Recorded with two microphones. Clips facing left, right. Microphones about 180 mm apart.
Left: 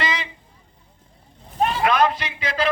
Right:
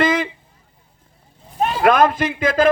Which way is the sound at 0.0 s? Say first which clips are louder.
Right 9 dB; 50° right (ahead or behind).